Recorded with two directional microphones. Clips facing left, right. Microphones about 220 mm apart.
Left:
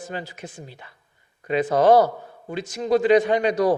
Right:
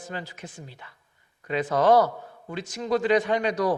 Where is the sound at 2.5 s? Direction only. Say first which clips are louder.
Left 5 dB; 10° left (ahead or behind).